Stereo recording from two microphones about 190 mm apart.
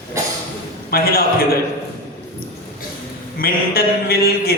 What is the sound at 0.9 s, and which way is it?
Speech, 55° left (ahead or behind).